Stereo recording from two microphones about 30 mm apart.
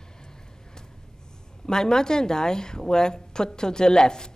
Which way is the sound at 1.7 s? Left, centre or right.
Left.